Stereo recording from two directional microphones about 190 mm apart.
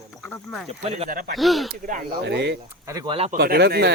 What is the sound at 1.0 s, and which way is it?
Speech, 50° right (ahead or behind).